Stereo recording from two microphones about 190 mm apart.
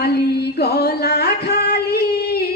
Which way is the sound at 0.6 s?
55° left (ahead or behind).